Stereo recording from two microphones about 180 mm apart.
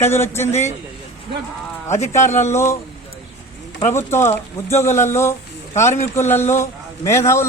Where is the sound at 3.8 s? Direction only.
15° left (ahead or behind).